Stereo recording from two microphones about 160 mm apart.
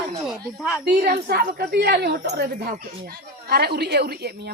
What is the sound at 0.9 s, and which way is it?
Speech, 80° right.